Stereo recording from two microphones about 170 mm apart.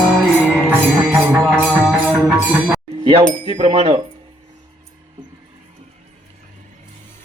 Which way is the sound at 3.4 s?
35° right (ahead or behind).